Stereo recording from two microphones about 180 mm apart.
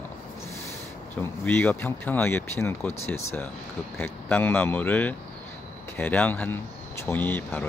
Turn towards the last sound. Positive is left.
turn(degrees=10)  # may be behind; listen again after turning